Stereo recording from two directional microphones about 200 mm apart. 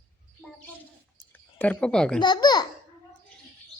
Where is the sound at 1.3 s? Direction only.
10° left (ahead or behind).